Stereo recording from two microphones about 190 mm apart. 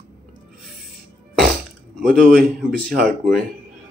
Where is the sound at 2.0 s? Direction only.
50° right (ahead or behind).